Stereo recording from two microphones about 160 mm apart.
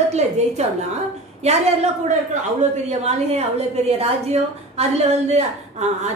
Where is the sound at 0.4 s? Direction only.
45° right (ahead or behind).